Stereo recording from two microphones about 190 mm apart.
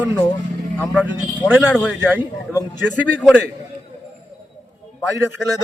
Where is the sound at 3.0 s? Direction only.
5° left (ahead or behind).